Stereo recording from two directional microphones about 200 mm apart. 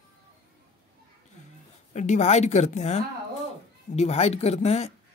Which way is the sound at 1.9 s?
35° left (ahead or behind).